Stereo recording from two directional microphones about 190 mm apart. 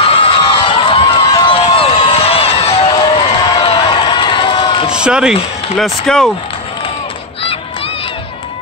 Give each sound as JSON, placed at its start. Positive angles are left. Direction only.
{"t": 0.0, "sound": "run", "side_deg": 25}
{"t": 4.9, "sound": "speech", "side_deg": -5}